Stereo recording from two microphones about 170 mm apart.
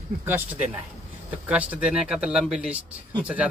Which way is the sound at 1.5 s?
10° right (ahead or behind).